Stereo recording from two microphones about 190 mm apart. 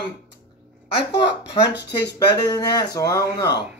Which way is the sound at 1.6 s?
60° left (ahead or behind).